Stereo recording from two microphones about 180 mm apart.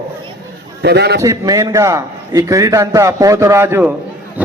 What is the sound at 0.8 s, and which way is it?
Speech, 65° right (ahead or behind).